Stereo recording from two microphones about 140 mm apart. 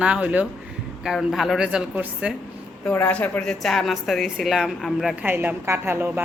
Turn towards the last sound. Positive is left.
turn(degrees=-15)  # may be behind; listen again after turning